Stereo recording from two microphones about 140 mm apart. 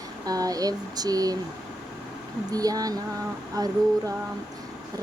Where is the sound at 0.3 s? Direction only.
25° right (ahead or behind).